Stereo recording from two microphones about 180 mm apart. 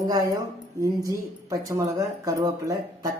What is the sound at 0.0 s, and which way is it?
Speech, 20° right (ahead or behind).